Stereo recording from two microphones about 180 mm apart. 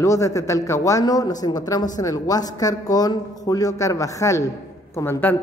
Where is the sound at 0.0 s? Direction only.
15° left (ahead or behind).